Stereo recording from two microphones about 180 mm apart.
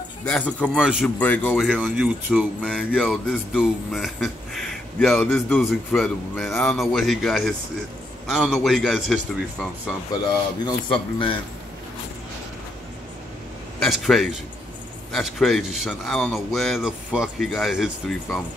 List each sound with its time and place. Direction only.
0.2 s speech: 5° left (ahead or behind)
1.0 s speech: 10° left (ahead or behind)
1.7 s speech: 5° right (ahead or behind)
6.5 s speech: 15° left (ahead or behind)
6.8 s speech: centre (ahead or behind)
10.6 s a man's voice: 30° left (ahead or behind)
13.7 s speech: centre (ahead or behind)